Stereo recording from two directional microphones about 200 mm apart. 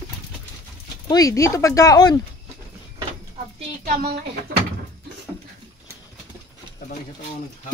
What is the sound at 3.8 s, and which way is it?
Speech, 50° right (ahead or behind).